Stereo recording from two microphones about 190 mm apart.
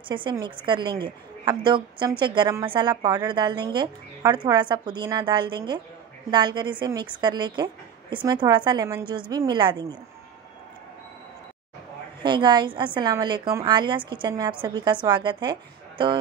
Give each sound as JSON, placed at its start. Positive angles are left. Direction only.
{"t": 0.1, "sound": "a woman's voice", "side_deg": -25}
{"t": 12.2, "sound": "a woman's voice", "side_deg": -25}